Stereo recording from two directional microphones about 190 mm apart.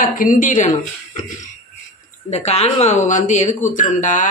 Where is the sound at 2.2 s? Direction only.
35° left (ahead or behind).